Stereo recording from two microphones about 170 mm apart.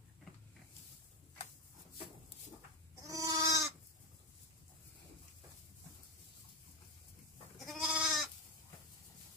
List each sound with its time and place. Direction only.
3.0 s goat: 20° right (ahead or behind)
7.5 s goat: centre (ahead or behind)